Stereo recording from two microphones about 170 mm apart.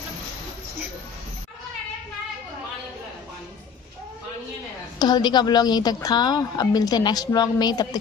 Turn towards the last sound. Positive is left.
turn(degrees=25)  # may be behind; listen again after turning